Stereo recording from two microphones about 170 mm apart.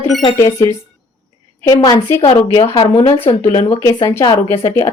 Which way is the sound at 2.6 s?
35° left (ahead or behind).